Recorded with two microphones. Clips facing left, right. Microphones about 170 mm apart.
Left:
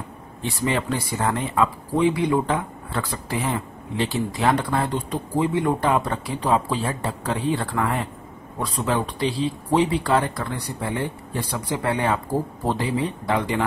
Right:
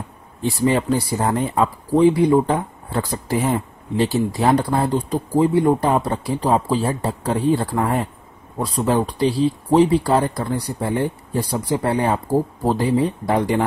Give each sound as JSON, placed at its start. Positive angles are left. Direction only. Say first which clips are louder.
{"t": 0.4, "sound": "speech", "louder": "right 6 dB", "side_deg": -35}